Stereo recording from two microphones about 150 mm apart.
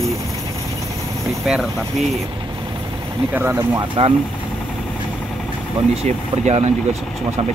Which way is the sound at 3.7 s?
35° right (ahead or behind).